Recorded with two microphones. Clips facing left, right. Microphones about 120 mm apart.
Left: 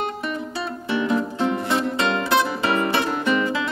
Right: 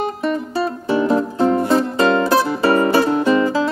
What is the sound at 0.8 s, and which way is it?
Music, 35° right (ahead or behind).